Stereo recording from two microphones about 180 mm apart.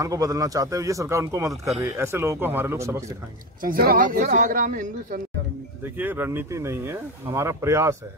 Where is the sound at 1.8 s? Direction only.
15° right (ahead or behind).